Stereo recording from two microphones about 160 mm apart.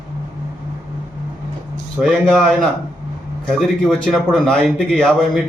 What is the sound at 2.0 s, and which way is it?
A man's voice, 5° left (ahead or behind).